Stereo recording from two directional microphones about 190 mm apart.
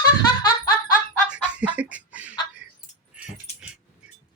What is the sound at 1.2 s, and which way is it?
Chicken, 5° right (ahead or behind).